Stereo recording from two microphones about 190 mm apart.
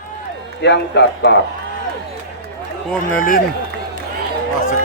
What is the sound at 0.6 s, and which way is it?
Speech, 65° left (ahead or behind).